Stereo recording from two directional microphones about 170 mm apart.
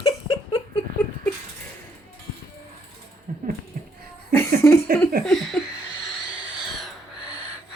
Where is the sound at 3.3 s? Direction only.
50° right (ahead or behind).